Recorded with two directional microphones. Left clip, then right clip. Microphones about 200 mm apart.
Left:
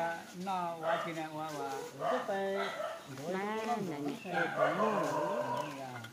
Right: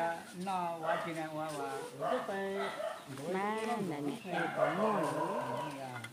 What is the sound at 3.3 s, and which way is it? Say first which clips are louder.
Speech: right 1 dB; 35° right (ahead or behind).